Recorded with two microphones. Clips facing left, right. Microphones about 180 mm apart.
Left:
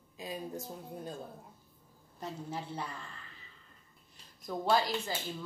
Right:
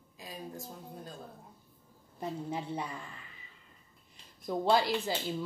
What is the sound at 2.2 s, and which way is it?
Speech, 15° right (ahead or behind).